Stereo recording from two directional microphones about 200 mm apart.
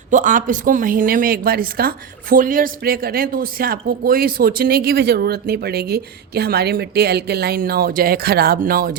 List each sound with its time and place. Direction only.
0.1 s a woman's voice: 40° right (ahead or behind)